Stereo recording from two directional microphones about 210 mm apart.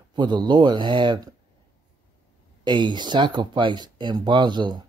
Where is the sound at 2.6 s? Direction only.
20° right (ahead or behind).